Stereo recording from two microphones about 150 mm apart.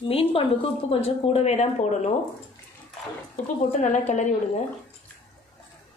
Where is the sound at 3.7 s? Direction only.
55° left (ahead or behind).